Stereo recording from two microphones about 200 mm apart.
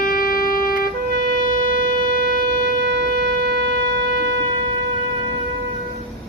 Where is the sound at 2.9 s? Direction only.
55° right (ahead or behind).